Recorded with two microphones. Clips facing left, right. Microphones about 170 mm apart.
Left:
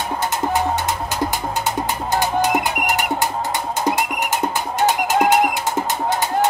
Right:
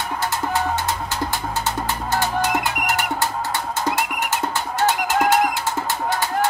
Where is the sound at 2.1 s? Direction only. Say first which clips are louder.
Left 3 dB; 15° left (ahead or behind).